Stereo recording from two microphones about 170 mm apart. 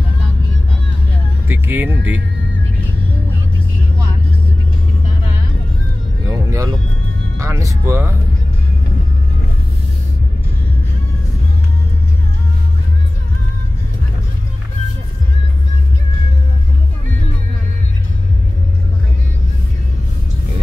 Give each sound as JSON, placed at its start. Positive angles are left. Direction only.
{"t": 1.5, "sound": "speech", "side_deg": -10}
{"t": 6.2, "sound": "vehicle", "side_deg": -20}
{"t": 7.3, "sound": "speech", "side_deg": -15}